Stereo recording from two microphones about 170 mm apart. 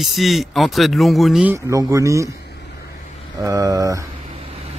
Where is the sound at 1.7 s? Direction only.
20° right (ahead or behind).